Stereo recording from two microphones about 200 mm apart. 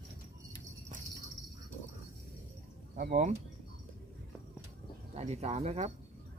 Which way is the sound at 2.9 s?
40° right (ahead or behind).